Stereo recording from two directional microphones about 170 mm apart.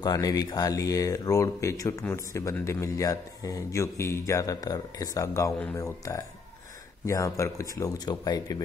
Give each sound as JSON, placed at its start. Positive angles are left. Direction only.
{"t": 0.0, "sound": "speech", "side_deg": 20}